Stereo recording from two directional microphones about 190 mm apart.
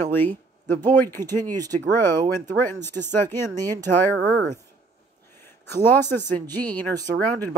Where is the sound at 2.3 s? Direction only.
10° left (ahead or behind).